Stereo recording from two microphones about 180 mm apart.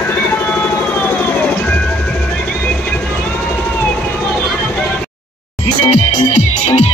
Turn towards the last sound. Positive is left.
turn(degrees=35)  # may be behind; listen again after turning